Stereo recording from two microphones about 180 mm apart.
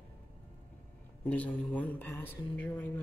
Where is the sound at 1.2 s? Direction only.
10° left (ahead or behind).